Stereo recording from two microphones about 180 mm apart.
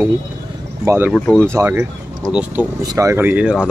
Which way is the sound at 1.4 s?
15° right (ahead or behind).